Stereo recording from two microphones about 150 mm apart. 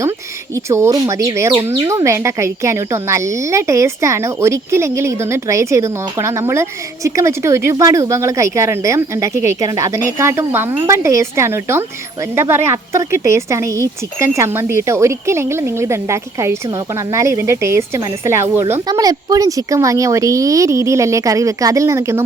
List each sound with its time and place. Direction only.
0.5 s a woman's voice: 20° right (ahead or behind)